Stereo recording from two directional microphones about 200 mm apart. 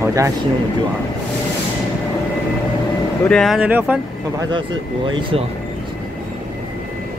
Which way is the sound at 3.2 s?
5° left (ahead or behind).